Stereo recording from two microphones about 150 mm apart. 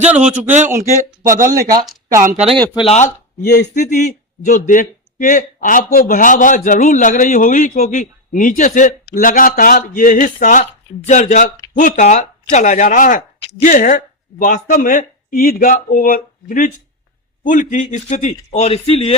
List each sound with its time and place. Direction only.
0.1 s a man's voice: 10° right (ahead or behind)
1.5 s speech: 80° right
2.7 s a man's voice: 45° left (ahead or behind)
3.8 s a man's voice: 55° left (ahead or behind)